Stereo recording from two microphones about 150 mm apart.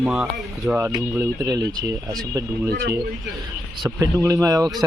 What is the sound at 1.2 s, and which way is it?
Speech, 20° right (ahead or behind).